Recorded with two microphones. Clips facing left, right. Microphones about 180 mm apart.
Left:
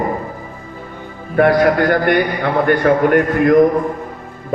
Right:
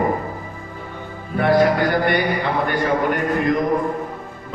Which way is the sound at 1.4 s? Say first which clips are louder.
Left 4 dB; 55° left (ahead or behind).